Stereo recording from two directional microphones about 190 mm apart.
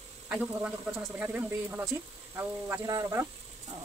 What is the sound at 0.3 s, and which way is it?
Speech, 5° right (ahead or behind).